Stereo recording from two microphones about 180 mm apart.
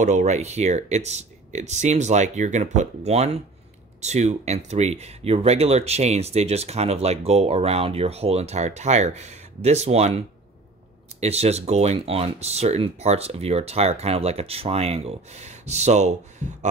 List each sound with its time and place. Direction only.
0.0 s speech: 40° right (ahead or behind)